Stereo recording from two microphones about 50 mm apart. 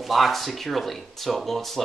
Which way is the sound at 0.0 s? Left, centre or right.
Centre.